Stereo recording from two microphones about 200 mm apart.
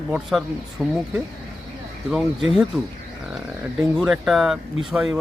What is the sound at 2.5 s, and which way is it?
Speech, centre (ahead or behind).